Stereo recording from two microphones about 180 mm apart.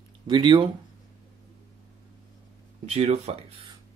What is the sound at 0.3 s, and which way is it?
Speech, 25° right (ahead or behind).